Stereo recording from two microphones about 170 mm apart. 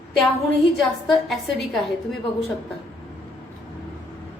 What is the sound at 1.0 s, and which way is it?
Speech, centre (ahead or behind).